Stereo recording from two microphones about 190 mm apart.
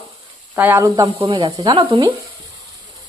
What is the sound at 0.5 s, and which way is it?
A woman's voice, 10° right (ahead or behind).